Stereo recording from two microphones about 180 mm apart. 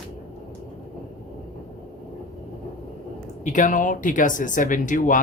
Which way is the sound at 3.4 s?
45° left (ahead or behind).